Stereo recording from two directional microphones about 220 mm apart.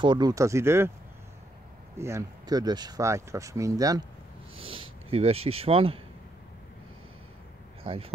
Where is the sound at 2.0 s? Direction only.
15° right (ahead or behind).